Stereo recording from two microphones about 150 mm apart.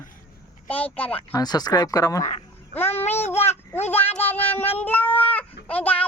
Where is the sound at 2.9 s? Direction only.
45° left (ahead or behind).